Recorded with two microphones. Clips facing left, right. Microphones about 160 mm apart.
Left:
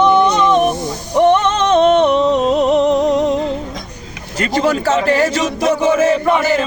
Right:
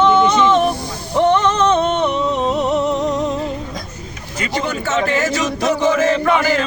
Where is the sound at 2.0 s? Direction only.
90° left.